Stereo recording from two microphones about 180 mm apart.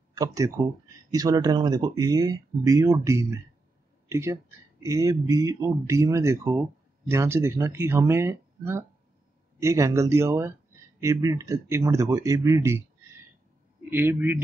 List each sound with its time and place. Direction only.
0.1 s speech: 20° right (ahead or behind)
13.8 s speech: 10° right (ahead or behind)